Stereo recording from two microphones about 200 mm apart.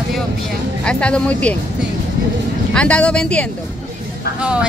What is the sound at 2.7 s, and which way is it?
Speech, 5° left (ahead or behind).